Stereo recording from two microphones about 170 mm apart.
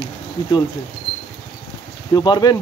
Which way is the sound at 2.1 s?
25° left (ahead or behind).